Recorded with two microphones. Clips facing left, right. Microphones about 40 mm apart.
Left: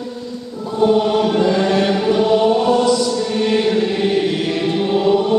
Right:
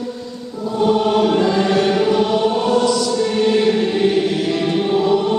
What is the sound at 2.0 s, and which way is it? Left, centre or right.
Choir, centre.